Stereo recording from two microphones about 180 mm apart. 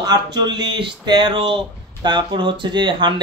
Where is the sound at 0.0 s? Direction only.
25° right (ahead or behind).